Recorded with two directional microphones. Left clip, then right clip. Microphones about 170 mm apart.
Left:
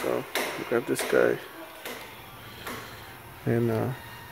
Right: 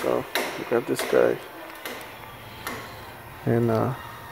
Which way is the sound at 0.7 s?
15° left (ahead or behind).